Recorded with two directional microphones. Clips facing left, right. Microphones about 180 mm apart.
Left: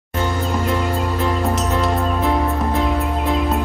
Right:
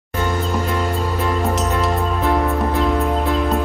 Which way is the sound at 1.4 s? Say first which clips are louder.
Even; centre (ahead or behind).